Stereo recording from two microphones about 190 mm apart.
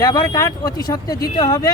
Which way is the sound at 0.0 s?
20° left (ahead or behind).